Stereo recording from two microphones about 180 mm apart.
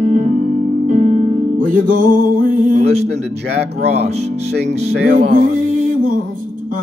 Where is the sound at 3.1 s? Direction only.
65° right (ahead or behind).